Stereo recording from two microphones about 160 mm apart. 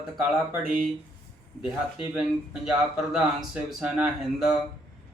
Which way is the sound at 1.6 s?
30° left (ahead or behind).